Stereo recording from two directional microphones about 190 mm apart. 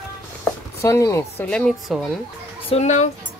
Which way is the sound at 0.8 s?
15° left (ahead or behind).